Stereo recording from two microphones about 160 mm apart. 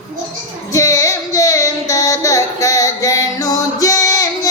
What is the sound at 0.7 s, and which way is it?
Child singing, 20° left (ahead or behind).